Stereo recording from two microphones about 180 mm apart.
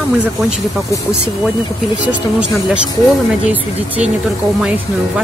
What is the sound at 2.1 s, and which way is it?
Speech, 5° right (ahead or behind).